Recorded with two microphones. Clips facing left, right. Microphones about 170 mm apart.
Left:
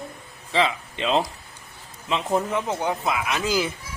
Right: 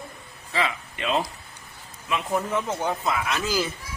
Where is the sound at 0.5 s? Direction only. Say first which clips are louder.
Left 4 dB; 25° left (ahead or behind).